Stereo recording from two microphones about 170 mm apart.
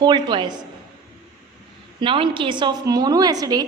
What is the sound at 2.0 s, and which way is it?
A woman's voice, 30° right (ahead or behind).